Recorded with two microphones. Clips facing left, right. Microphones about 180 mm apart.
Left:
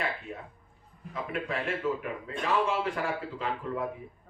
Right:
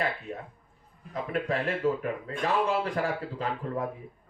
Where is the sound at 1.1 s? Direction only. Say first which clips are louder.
Right 4 dB; 35° right (ahead or behind).